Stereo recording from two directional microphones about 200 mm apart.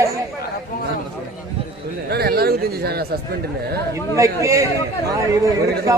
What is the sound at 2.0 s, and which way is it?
Speech, 50° right (ahead or behind).